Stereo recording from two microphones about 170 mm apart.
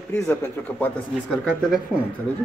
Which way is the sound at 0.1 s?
10° left (ahead or behind).